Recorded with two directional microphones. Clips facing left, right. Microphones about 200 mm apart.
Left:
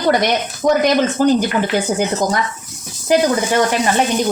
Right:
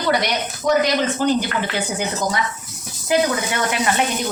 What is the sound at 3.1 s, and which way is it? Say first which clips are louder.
Speech: left 5 dB; 40° left (ahead or behind).